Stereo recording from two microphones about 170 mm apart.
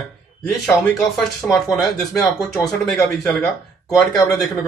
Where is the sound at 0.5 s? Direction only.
Centre (ahead or behind).